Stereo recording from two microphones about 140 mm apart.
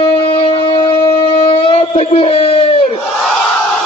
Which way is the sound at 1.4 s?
40° left (ahead or behind).